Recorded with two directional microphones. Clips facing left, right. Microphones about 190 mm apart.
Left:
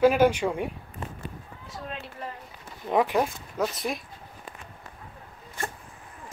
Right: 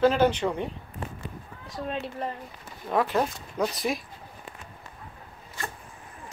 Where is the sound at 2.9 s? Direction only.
15° left (ahead or behind); by 4.0 s centre (ahead or behind).